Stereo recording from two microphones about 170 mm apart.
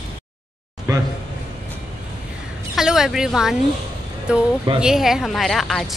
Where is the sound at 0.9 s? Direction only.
20° right (ahead or behind).